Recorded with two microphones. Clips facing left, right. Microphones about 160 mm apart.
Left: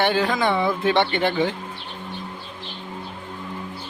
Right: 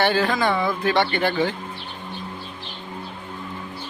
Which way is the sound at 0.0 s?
15° left (ahead or behind).